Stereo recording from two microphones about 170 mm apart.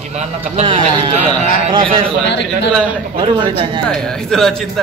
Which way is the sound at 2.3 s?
90° left.